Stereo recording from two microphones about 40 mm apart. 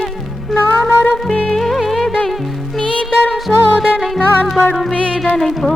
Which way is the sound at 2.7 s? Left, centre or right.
Left.